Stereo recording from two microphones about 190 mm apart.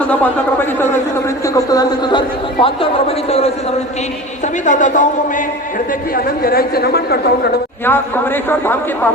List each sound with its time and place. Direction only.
0.1 s a man's voice: 10° left (ahead or behind); by 3.5 s 30° left (ahead or behind)
4.6 s a man's voice: 40° left (ahead or behind)
6.1 s a man's voice: 50° left (ahead or behind)
7.9 s a man's voice: 10° left (ahead or behind)